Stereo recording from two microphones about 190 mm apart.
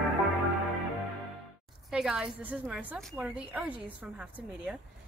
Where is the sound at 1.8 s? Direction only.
5° right (ahead or behind).